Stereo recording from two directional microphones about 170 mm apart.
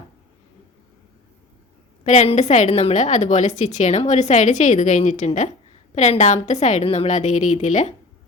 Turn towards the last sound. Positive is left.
turn(degrees=45)  # may be behind; listen again after turning